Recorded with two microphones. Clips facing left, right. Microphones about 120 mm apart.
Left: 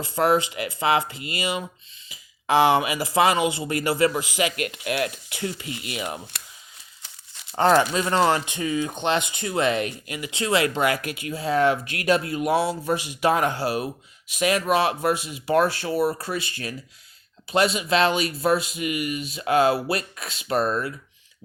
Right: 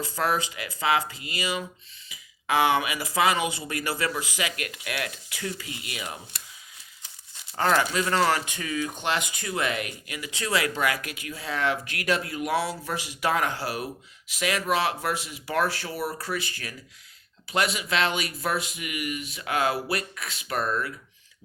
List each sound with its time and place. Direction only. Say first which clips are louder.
0.0 s speech: left 6 dB; 25° left (ahead or behind)
6.3 s a sound: left 3 dB; 65° left (ahead or behind)
7.5 s speech: left 5 dB; 25° left (ahead or behind)